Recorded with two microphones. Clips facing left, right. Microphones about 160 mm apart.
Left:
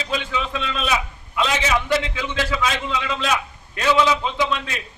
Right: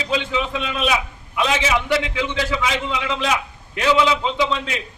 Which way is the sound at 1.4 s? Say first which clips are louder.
Right 1 dB; 15° right (ahead or behind).